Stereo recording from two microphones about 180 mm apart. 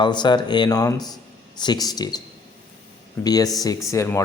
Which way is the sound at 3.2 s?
20° left (ahead or behind).